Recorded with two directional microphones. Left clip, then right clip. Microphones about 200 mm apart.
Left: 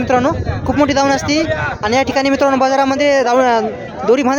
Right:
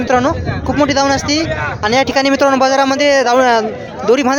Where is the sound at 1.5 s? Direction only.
45° left (ahead or behind).